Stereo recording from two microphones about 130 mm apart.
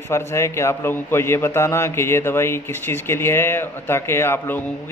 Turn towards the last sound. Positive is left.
turn(degrees=20)  # may be behind; listen again after turning